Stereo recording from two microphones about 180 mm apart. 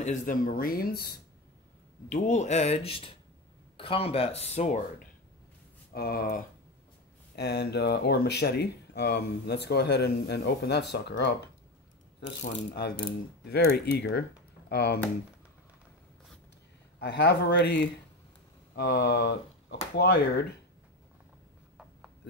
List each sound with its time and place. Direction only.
0.0 s speech: 45° left (ahead or behind)
2.0 s speech: 45° left (ahead or behind)
5.9 s speech: 55° left (ahead or behind)
7.3 s speech: 70° left (ahead or behind)
17.0 s speech: 75° left (ahead or behind)